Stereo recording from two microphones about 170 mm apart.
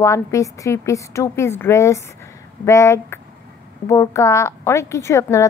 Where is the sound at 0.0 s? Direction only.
15° left (ahead or behind).